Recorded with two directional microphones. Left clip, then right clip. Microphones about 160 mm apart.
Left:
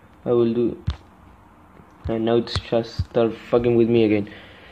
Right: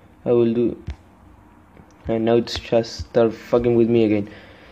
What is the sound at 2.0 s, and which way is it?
Speech, 15° right (ahead or behind).